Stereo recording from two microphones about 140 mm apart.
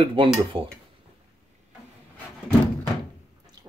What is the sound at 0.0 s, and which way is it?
Speech, 35° right (ahead or behind).